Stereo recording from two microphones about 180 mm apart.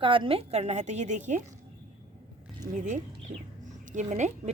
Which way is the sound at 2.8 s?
45° right (ahead or behind).